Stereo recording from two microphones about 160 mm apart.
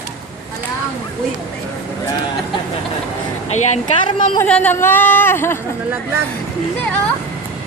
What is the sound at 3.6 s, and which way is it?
Speech, 45° left (ahead or behind).